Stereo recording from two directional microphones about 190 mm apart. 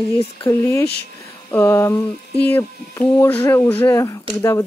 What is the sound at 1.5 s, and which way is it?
Speech, 10° left (ahead or behind).